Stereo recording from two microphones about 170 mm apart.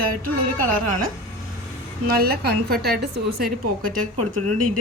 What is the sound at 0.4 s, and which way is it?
A woman's voice, 55° right (ahead or behind).